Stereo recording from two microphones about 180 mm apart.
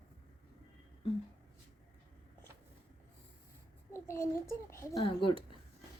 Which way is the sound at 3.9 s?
15° left (ahead or behind).